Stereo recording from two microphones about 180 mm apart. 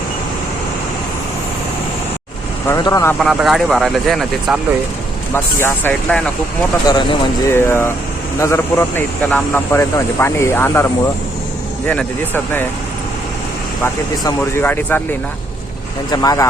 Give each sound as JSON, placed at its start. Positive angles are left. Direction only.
{"t": 2.6, "sound": "speech", "side_deg": 20}
{"t": 3.2, "sound": "speech", "side_deg": 0}
{"t": 5.3, "sound": "speech", "side_deg": 10}
{"t": 6.8, "sound": "speech", "side_deg": 20}
{"t": 11.9, "sound": "speech", "side_deg": 10}
{"t": 13.8, "sound": "speech", "side_deg": 15}
{"t": 16.1, "sound": "speech", "side_deg": 20}